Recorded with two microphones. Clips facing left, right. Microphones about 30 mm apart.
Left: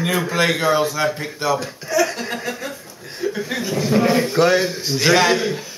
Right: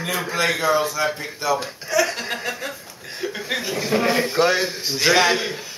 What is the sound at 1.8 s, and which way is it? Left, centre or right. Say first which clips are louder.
A man's voice: left 2 dB; centre.